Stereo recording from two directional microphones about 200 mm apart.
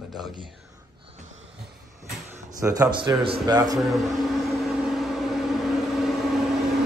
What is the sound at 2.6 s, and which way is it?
A man's voice, 15° right (ahead or behind).